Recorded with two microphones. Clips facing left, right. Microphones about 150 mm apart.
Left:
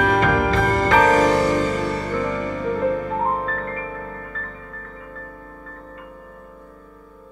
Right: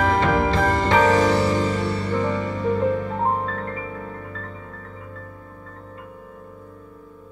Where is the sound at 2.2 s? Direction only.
30° right (ahead or behind).